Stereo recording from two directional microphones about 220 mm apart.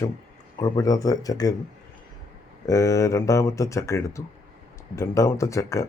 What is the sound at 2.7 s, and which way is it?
Speech, 15° left (ahead or behind).